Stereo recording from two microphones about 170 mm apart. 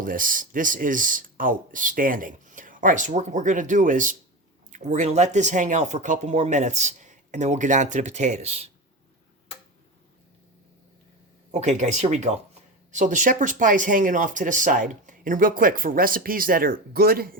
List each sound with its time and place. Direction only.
0.0 s speech: 55° right (ahead or behind); by 8.7 s 40° right (ahead or behind)
11.5 s speech: 40° right (ahead or behind); by 17.3 s 60° right (ahead or behind)